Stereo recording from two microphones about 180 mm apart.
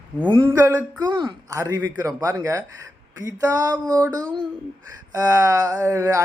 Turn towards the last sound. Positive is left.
turn(degrees=-15)  # may be behind; listen again after turning